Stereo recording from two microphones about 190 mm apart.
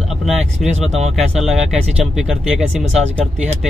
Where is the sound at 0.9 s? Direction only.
35° right (ahead or behind).